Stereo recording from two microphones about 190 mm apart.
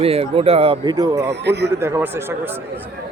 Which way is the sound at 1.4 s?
60° right (ahead or behind).